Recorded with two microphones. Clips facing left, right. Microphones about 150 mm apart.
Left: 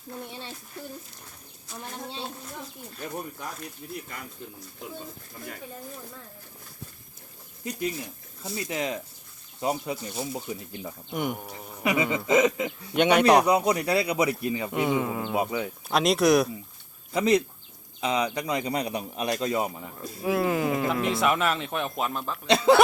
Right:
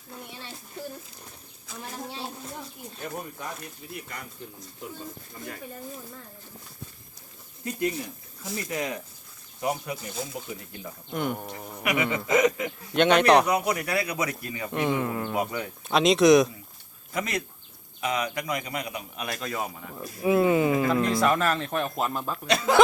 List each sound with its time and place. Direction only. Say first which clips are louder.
7.6 s a man's voice: right 2 dB; 20° left (ahead or behind)
11.1 s speech: right 1 dB; 10° left (ahead or behind)
11.8 s a man's voice: left 2 dB; 25° left (ahead or behind)
12.0 s a man's voice: even; 10° left (ahead or behind)
13.5 s a man's voice: left 3 dB; 25° left (ahead or behind)
14.7 s speech: right 2 dB; 10° left (ahead or behind)
15.9 s speech: right 3 dB; centre (ahead or behind)
17.2 s a man's voice: left 8 dB; 25° left (ahead or behind)
20.2 s speech: right 4 dB; centre (ahead or behind)
22.1 s speech: right 1 dB; 10° right (ahead or behind)
22.4 s a man's voice: left 5 dB; 25° left (ahead or behind)